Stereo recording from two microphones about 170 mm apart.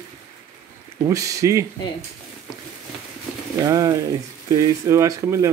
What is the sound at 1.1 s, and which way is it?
Speech, 20° right (ahead or behind).